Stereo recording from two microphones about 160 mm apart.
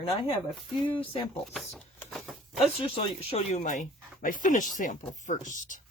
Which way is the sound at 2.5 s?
35° left (ahead or behind).